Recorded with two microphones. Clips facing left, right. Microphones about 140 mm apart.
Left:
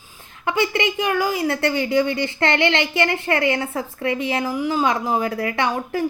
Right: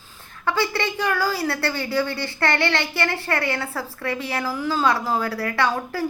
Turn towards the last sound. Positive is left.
turn(degrees=20)  # may be behind; listen again after turning